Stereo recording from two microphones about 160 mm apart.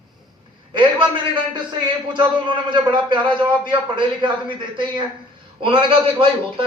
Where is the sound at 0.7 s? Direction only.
30° right (ahead or behind).